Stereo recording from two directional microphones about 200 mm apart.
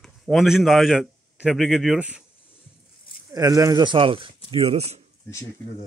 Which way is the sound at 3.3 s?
15° right (ahead or behind).